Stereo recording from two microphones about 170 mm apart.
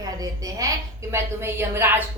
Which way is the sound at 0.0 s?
20° right (ahead or behind).